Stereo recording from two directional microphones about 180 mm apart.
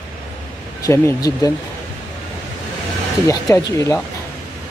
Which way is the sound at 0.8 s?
20° left (ahead or behind).